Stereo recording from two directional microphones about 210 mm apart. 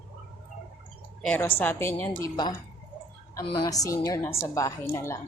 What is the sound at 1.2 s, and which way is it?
A woman's voice, 10° left (ahead or behind).